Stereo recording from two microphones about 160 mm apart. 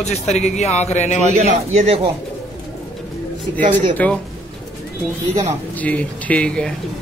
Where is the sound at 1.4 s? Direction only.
45° right (ahead or behind).